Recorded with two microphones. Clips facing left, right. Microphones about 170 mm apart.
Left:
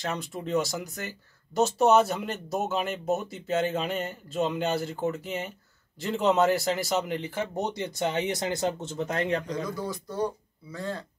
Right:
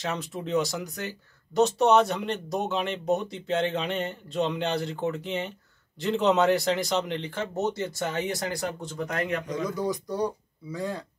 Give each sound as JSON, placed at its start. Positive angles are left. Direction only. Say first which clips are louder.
{"t": 0.0, "sound": "speech", "louder": "right 1 dB", "side_deg": 0}
{"t": 9.5, "sound": "speech", "louder": "right 3 dB", "side_deg": -20}